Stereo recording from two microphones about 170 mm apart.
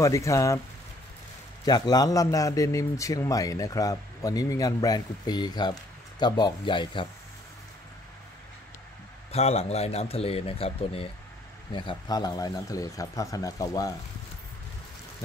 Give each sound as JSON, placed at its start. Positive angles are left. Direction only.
{"t": 0.0, "sound": "speech", "side_deg": 15}
{"t": 1.6, "sound": "a man's voice", "side_deg": 20}
{"t": 9.3, "sound": "a man's voice", "side_deg": 35}